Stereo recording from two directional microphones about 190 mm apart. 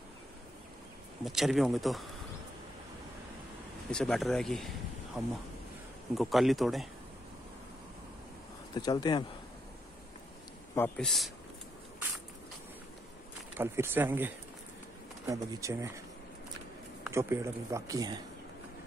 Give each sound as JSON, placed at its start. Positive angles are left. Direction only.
{"t": 1.2, "sound": "speech", "side_deg": 0}
{"t": 3.9, "sound": "speech", "side_deg": 0}
{"t": 8.7, "sound": "speech", "side_deg": 20}
{"t": 10.7, "sound": "speech", "side_deg": 10}
{"t": 13.6, "sound": "speech", "side_deg": -10}
{"t": 17.0, "sound": "speech", "side_deg": -15}